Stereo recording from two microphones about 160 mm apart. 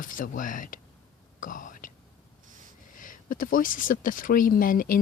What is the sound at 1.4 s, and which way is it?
Whispering, 55° left (ahead or behind).